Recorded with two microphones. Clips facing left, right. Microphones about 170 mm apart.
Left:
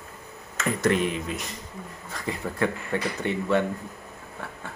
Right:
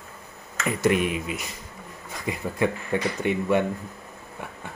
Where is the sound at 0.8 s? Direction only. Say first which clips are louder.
Right 2 dB; 10° right (ahead or behind).